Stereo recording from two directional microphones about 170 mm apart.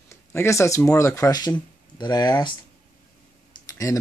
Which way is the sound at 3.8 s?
20° left (ahead or behind).